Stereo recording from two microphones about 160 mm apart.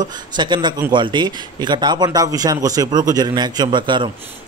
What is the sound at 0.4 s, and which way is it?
A man's voice, 30° right (ahead or behind).